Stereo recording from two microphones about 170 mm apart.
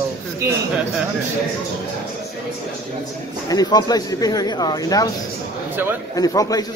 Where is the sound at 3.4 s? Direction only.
25° left (ahead or behind).